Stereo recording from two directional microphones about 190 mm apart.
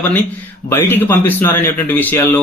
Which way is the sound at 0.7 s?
10° left (ahead or behind).